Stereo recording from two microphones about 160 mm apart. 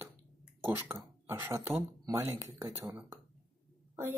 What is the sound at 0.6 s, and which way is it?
Speech, 15° right (ahead or behind).